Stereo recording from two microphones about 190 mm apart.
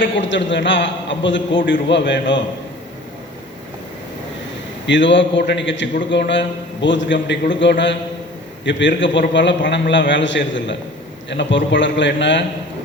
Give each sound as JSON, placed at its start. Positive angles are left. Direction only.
{"t": 0.0, "sound": "a man's voice", "side_deg": 75}
{"t": 4.9, "sound": "a man's voice", "side_deg": 75}